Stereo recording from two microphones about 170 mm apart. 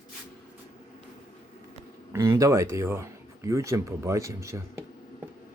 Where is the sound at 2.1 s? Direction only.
15° right (ahead or behind).